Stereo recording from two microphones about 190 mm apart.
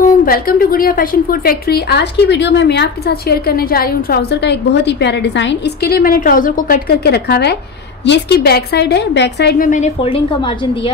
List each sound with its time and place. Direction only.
0.2 s a woman's voice: 50° left (ahead or behind)
9.7 s a woman's voice: 35° left (ahead or behind)